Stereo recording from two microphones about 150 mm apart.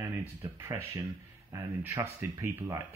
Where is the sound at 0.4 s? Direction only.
20° right (ahead or behind).